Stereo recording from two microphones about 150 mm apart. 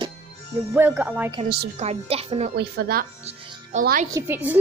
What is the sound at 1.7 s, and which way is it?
Speech, 45° right (ahead or behind).